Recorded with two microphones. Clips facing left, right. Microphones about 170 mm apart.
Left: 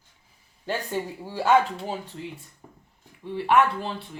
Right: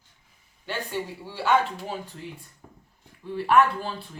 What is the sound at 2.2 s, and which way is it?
Speech, 20° left (ahead or behind).